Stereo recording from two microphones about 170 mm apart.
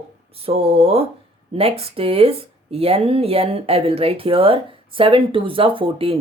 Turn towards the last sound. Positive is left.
turn(degrees=-30)  # may be behind; listen again after turning